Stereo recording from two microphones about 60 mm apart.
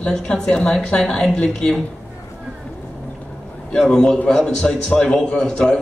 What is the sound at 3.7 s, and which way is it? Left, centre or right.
A man's voice, centre.